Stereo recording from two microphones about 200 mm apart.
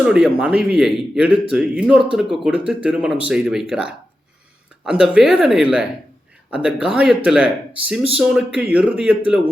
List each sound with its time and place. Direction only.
0.0 s speech: 5° right (ahead or behind)